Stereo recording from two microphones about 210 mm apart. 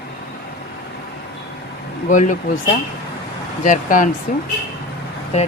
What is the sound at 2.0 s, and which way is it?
Speech, 35° left (ahead or behind).